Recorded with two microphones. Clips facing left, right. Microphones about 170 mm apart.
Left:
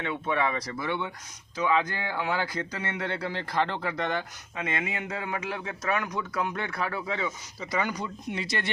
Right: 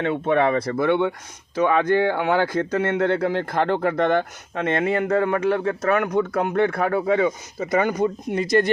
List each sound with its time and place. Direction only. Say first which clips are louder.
0.0 s speech: right 9 dB; 50° right (ahead or behind)